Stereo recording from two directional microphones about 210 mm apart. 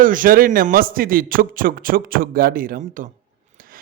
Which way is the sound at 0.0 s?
40° right (ahead or behind).